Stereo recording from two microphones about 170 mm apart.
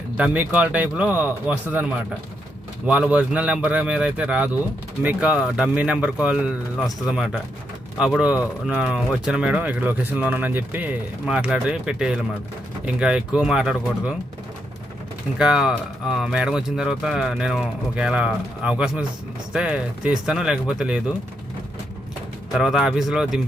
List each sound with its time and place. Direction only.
0.2 s speech: 10° right (ahead or behind)
15.4 s speech: 5° right (ahead or behind)
22.5 s speech: 5° right (ahead or behind)